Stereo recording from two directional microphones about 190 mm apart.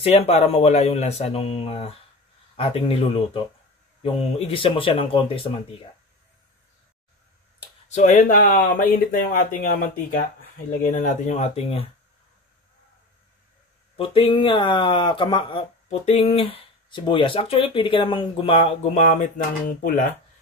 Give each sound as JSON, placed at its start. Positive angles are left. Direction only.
{"t": 0.0, "sound": "speech", "side_deg": 35}
{"t": 7.9, "sound": "speech", "side_deg": 40}
{"t": 13.9, "sound": "speech", "side_deg": 30}